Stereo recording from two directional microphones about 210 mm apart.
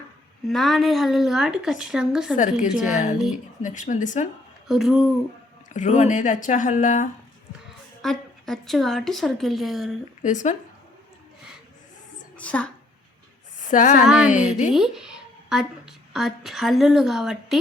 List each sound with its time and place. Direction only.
0.4 s a woman's voice: centre (ahead or behind)
2.9 s speech: 35° left (ahead or behind)
4.7 s a woman's voice: centre (ahead or behind)
5.6 s speech: 35° left (ahead or behind)
8.0 s a woman's voice: centre (ahead or behind)
10.2 s speech: 35° left (ahead or behind)
12.4 s a woman's voice: 5° left (ahead or behind)
13.6 s speech: 35° left (ahead or behind)
14.0 s a woman's voice: centre (ahead or behind)